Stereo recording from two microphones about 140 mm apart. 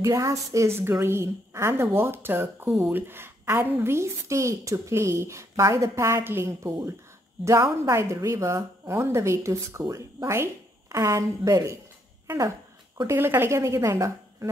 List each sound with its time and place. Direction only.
0.0 s a woman's voice: 25° right (ahead or behind)